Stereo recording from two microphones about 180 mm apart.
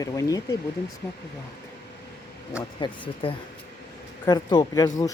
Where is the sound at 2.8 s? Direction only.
25° left (ahead or behind).